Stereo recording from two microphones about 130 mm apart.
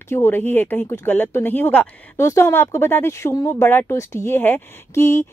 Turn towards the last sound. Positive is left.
turn(degrees=20)  # may be behind; listen again after turning